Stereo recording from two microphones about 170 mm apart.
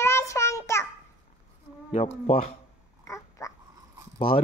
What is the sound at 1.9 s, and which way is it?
Speech, 35° left (ahead or behind).